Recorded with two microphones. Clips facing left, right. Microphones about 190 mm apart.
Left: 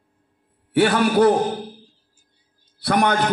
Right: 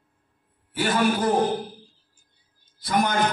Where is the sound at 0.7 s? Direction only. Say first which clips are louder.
Left 5 dB; 65° left (ahead or behind).